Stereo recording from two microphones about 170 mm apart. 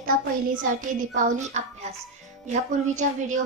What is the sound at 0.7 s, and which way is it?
A woman's voice, 50° right (ahead or behind).